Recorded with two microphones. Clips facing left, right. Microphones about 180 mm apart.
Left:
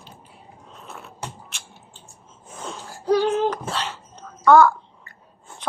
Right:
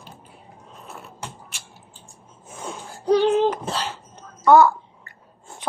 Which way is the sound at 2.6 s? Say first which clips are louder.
Right 1 dB; 15° right (ahead or behind).